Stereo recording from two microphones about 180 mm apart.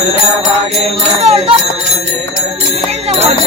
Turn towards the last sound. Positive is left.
turn(degrees=-30)  # may be behind; listen again after turning